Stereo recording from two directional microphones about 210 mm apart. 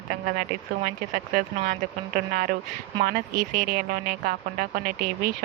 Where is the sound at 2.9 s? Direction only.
45° right (ahead or behind).